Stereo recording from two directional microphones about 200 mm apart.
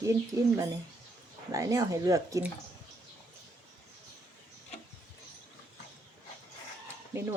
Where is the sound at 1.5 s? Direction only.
15° right (ahead or behind).